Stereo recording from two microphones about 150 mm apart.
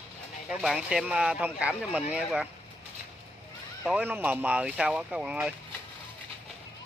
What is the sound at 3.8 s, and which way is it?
Speech, 10° right (ahead or behind).